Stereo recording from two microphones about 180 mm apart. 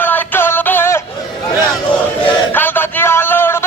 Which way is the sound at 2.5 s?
10° left (ahead or behind).